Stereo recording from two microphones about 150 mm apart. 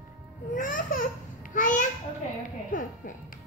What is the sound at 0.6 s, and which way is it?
Babbling, 60° left (ahead or behind).